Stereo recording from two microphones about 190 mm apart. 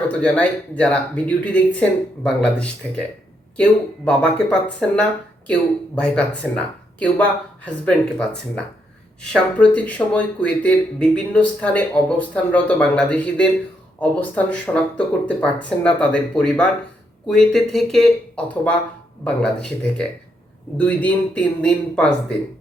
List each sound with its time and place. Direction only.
0.1 s speech: 5° left (ahead or behind)
20.7 s speech: 10° left (ahead or behind)